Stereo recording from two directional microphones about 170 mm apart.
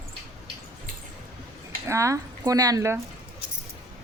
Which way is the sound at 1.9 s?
20° right (ahead or behind).